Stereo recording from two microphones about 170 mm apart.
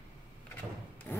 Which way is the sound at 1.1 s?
10° left (ahead or behind).